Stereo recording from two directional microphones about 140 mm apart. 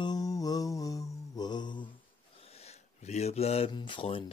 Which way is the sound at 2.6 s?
50° left (ahead or behind).